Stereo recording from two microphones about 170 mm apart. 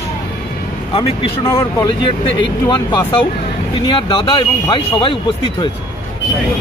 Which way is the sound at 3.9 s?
30° left (ahead or behind).